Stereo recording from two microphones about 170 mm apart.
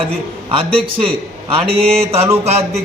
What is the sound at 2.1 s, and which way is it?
Mantra, 15° right (ahead or behind).